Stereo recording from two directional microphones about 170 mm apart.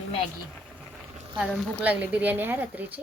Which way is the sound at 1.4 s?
5° right (ahead or behind).